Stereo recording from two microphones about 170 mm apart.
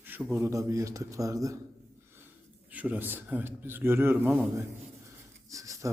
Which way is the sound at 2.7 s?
10° right (ahead or behind).